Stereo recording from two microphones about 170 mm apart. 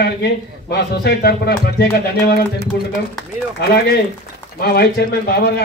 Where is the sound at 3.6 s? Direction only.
85° left.